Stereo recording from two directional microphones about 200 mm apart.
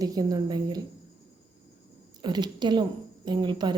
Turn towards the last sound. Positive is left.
turn(degrees=-20)  # may be behind; listen again after turning